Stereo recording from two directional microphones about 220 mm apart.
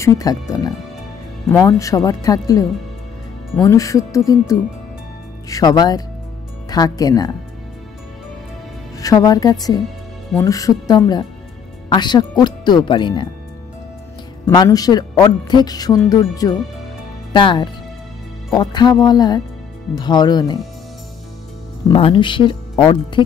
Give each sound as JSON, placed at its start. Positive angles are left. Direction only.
{"t": 0.0, "sound": "speech", "side_deg": 15}
{"t": 5.5, "sound": "speech", "side_deg": 15}
{"t": 8.9, "sound": "speech", "side_deg": 15}
{"t": 14.4, "sound": "speech", "side_deg": 15}
{"t": 21.9, "sound": "speech", "side_deg": 20}